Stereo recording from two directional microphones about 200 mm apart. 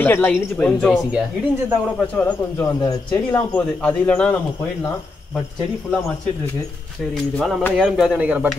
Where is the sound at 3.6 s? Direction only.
5° left (ahead or behind).